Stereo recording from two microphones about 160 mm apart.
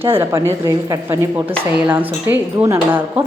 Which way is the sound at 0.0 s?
15° right (ahead or behind).